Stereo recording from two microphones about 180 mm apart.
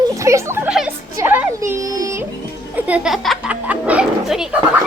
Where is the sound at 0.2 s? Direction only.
15° right (ahead or behind).